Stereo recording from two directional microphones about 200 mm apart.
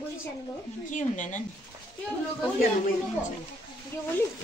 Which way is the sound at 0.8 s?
40° left (ahead or behind).